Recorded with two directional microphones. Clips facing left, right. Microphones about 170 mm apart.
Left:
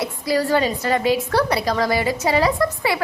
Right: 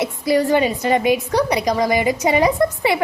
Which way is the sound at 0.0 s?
20° right (ahead or behind).